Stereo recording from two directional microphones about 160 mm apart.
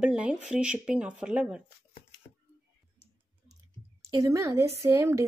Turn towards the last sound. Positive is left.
turn(degrees=-15)  # may be behind; listen again after turning